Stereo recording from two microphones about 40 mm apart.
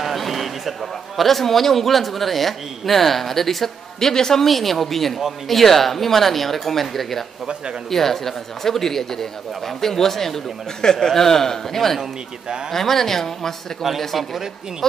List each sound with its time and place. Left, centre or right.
0.0 s a man's voice: centre
12.0 s speech: centre
12.7 s a man's voice: centre